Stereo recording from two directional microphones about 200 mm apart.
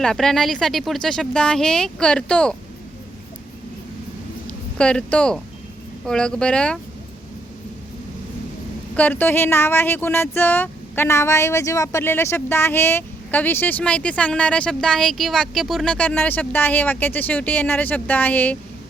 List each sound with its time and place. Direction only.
0.0 s speech: centre (ahead or behind)
4.8 s speech: 5° left (ahead or behind)
9.0 s speech: 10° left (ahead or behind)